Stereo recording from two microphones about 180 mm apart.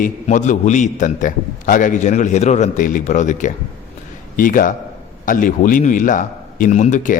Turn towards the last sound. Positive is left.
turn(degrees=45)  # may be behind; listen again after turning